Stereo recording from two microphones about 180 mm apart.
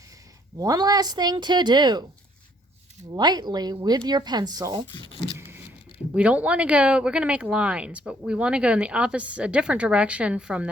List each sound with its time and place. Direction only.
0.6 s speech: 20° right (ahead or behind)
3.1 s speech: 25° right (ahead or behind)
6.1 s speech: 5° right (ahead or behind)